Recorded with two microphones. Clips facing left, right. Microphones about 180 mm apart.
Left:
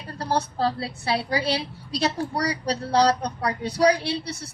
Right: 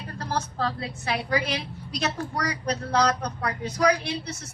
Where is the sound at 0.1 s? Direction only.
35° left (ahead or behind).